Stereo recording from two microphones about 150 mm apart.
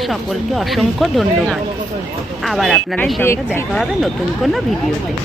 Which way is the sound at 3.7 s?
Centre (ahead or behind).